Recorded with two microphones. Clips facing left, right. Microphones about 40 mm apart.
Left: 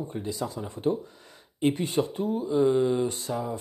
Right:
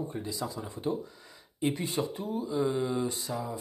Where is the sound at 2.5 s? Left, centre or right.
Left.